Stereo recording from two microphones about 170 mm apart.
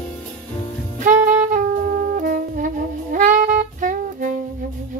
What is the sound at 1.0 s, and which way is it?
Saxophone, 45° right (ahead or behind).